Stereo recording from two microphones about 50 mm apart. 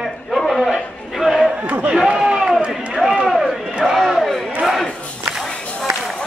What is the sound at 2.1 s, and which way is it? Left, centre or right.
Run, centre.